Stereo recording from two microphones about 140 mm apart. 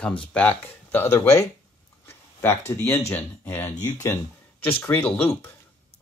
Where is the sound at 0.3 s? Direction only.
10° left (ahead or behind).